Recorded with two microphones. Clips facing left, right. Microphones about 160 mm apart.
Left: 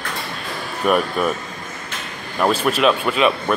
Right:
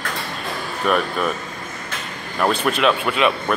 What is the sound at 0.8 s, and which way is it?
Speech, 5° left (ahead or behind).